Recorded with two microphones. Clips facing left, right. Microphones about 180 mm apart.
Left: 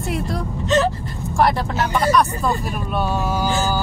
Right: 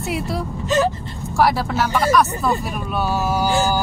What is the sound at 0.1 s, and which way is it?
Speech, 10° right (ahead or behind).